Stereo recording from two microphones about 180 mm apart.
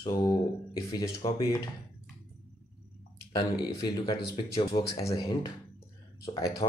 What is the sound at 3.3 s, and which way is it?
Speech, 25° left (ahead or behind).